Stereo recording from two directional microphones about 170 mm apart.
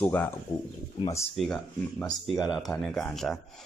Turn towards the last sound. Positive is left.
turn(degrees=0)  # may be behind; listen again after turning